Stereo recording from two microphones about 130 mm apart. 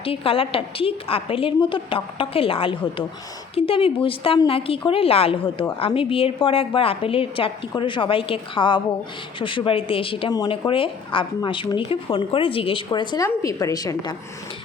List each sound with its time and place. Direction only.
0.0 s a woman's voice: 45° left (ahead or behind)